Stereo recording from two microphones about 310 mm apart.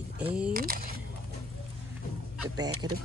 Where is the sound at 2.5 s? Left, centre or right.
Centre.